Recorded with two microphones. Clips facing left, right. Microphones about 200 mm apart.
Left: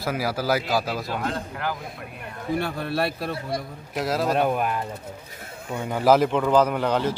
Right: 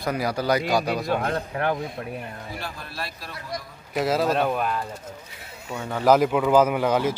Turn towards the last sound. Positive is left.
turn(degrees=-10)  # may be behind; listen again after turning